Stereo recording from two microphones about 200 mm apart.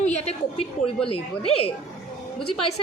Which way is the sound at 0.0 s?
35° left (ahead or behind).